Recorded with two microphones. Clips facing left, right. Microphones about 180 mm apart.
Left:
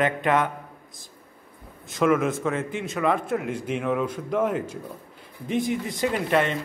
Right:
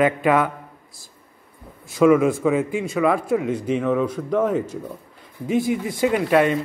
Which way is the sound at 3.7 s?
10° left (ahead or behind).